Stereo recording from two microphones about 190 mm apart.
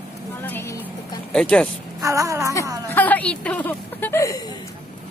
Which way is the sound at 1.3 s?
5° left (ahead or behind).